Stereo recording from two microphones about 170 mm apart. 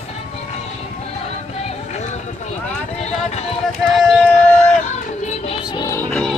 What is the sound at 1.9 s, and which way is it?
Run, 40° left (ahead or behind).